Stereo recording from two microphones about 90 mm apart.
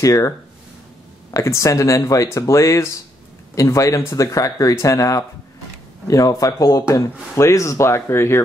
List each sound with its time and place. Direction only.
0.0 s speech: 40° left (ahead or behind)
1.3 s speech: 35° left (ahead or behind)